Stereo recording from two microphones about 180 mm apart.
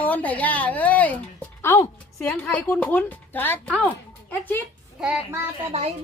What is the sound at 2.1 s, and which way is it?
A woman's voice, 5° left (ahead or behind).